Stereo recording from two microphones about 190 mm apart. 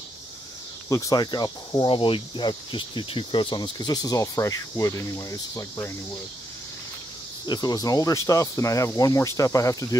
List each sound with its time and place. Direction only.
0.8 s speech: 15° left (ahead or behind)
7.4 s speech: 20° left (ahead or behind)